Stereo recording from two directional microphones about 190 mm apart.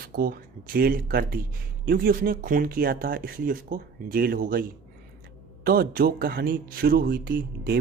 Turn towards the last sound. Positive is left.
turn(degrees=-55)  # may be behind; listen again after turning